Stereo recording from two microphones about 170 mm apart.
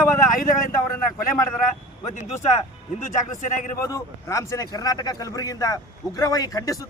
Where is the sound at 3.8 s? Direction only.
15° left (ahead or behind).